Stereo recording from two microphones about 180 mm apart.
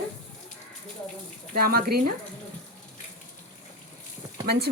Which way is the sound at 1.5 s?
55° right (ahead or behind).